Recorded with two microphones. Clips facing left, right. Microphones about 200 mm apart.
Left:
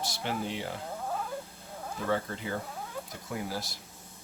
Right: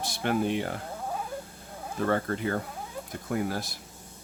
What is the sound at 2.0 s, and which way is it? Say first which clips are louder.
Speech: right 4 dB; 55° right (ahead or behind).